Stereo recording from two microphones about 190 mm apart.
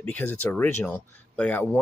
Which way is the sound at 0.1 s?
10° left (ahead or behind).